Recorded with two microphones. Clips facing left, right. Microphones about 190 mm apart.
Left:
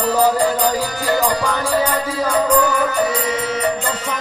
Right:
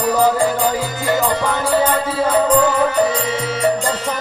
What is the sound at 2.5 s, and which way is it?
Music, 25° right (ahead or behind).